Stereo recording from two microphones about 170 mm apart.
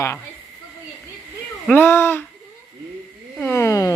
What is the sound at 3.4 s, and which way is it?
Speech, 15° left (ahead or behind).